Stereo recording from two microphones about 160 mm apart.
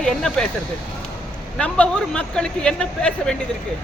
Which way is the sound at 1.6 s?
5° left (ahead or behind).